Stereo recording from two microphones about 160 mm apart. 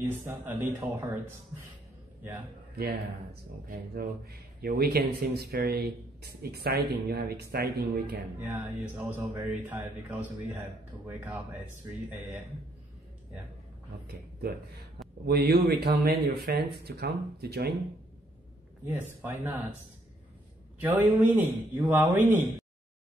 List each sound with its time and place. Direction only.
0.3 s speech: 15° right (ahead or behind)
2.7 s a man's voice: 80° right
8.4 s speech: 10° right (ahead or behind)
15.2 s speech: 85° right
19.2 s speech: 10° right (ahead or behind)
20.8 s speech: 10° right (ahead or behind)